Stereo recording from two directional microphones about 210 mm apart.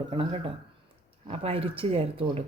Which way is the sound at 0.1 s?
25° right (ahead or behind).